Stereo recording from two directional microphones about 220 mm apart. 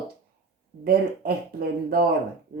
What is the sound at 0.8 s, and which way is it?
Speech, 45° right (ahead or behind).